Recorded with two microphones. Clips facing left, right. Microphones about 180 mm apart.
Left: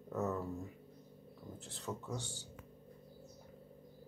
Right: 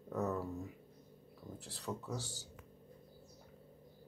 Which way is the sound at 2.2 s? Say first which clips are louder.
Even; 40° right (ahead or behind).